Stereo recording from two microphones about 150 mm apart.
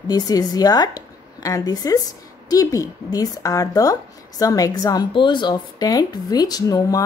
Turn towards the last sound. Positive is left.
turn(degrees=25)  # may be behind; listen again after turning